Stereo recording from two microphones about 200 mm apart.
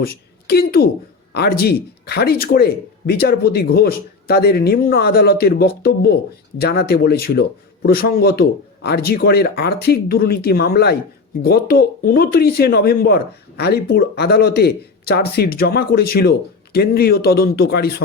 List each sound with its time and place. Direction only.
0.0 s a woman's voice: 50° left (ahead or behind)